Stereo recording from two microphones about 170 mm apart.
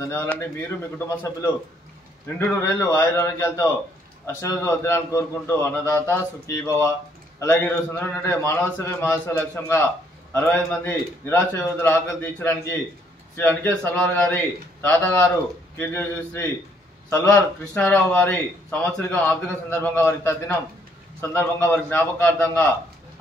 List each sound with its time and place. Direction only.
0.1 s speech: 15° left (ahead or behind)